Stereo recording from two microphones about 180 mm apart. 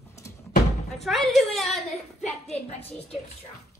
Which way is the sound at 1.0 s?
Centre (ahead or behind).